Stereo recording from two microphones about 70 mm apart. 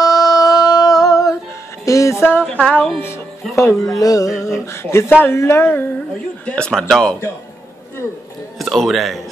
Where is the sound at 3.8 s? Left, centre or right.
Left.